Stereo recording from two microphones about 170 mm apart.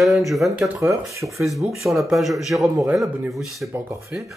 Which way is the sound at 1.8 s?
Centre (ahead or behind).